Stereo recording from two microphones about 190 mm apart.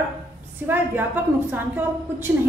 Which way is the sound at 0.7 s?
10° right (ahead or behind).